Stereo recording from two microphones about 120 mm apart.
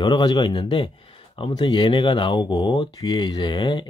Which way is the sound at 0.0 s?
35° left (ahead or behind).